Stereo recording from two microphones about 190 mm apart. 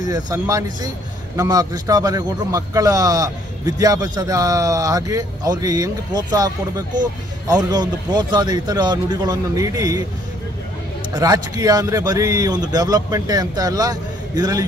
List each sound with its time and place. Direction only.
0.0 s a man's voice: 20° right (ahead or behind)
11.1 s a man's voice: 20° right (ahead or behind)